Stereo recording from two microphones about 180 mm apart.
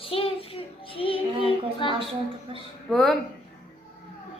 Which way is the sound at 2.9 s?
Centre (ahead or behind).